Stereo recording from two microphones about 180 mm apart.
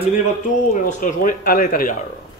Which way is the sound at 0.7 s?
45° left (ahead or behind).